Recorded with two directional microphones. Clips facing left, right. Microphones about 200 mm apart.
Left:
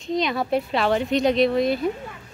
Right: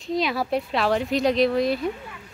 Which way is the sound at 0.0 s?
Centre (ahead or behind).